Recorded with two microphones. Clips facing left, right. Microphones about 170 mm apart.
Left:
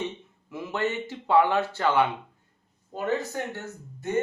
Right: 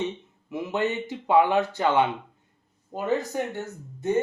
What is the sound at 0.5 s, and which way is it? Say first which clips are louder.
Speech: right 2 dB; 20° right (ahead or behind).